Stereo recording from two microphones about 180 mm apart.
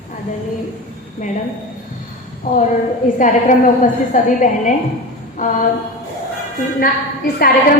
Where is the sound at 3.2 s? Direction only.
45° left (ahead or behind).